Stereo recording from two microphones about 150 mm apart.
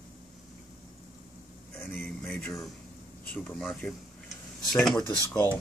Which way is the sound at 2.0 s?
5° left (ahead or behind).